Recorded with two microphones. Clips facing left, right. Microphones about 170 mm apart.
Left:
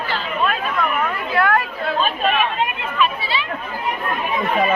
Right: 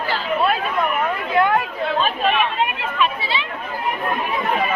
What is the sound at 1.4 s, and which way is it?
Speech, 20° right (ahead or behind).